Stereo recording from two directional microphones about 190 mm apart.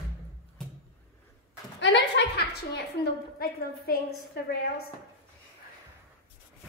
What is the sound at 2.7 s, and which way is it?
A woman's voice, 55° left (ahead or behind).